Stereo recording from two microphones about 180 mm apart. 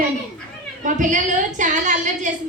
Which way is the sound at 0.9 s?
45° right (ahead or behind).